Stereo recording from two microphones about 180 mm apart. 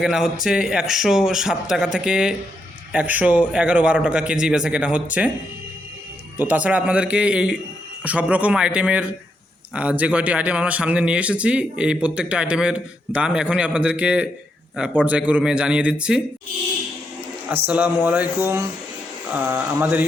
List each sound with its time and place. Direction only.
0.0 s a man's voice: centre (ahead or behind)
6.3 s a man's voice: 10° right (ahead or behind)
17.7 s a man's voice: 10° right (ahead or behind)